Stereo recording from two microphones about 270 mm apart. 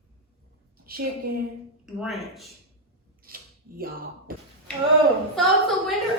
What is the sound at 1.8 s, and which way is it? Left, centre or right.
Speech, centre.